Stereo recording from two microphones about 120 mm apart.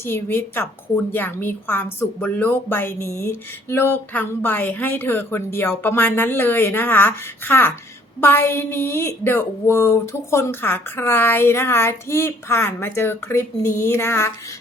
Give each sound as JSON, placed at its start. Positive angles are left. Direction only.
{"t": 0.0, "sound": "a woman's voice", "side_deg": 20}